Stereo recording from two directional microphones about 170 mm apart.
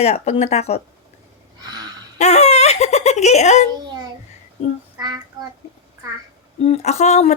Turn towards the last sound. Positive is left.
turn(degrees=40)  # may be behind; listen again after turning